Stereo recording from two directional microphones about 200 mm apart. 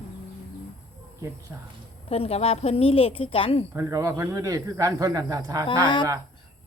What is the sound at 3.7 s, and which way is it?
Speech, 15° right (ahead or behind).